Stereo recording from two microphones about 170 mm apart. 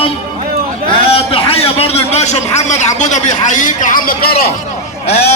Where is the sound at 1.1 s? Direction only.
35° left (ahead or behind); by 4.3 s 55° left (ahead or behind).